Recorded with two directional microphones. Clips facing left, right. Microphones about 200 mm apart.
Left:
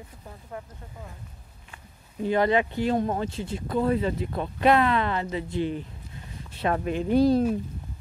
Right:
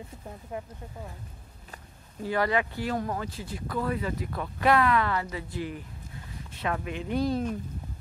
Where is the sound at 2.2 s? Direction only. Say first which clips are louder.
Left 4 dB; 20° left (ahead or behind).